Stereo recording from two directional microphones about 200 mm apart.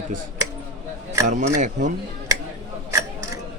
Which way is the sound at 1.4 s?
40° right (ahead or behind).